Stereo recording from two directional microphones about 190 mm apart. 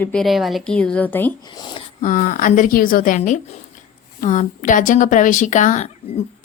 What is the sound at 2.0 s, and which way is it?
A woman's voice, 45° left (ahead or behind).